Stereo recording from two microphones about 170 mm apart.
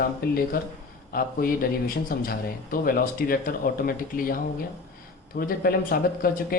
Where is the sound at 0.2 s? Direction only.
65° left (ahead or behind).